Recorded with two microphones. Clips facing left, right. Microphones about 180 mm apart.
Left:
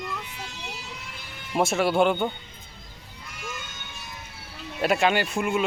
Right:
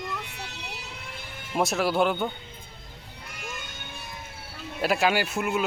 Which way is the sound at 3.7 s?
55° right (ahead or behind).